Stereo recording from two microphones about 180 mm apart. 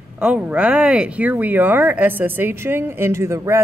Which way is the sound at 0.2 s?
5° right (ahead or behind).